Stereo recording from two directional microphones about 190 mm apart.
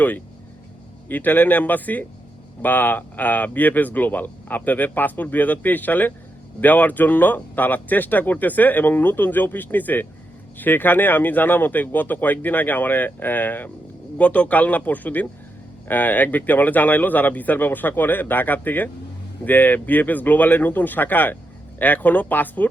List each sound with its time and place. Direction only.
1.0 s speech: 10° left (ahead or behind)